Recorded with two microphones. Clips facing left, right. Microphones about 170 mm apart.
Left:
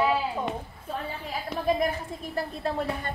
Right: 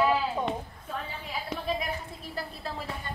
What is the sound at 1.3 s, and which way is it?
A woman's voice, 45° left (ahead or behind).